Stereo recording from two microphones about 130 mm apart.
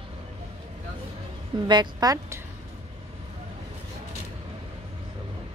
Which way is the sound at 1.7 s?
30° right (ahead or behind).